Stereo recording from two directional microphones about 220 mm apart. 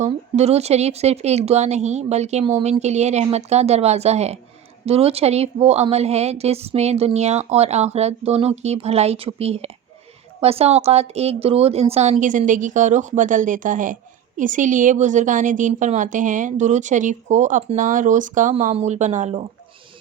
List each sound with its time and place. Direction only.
0.0 s a woman's voice: 30° right (ahead or behind)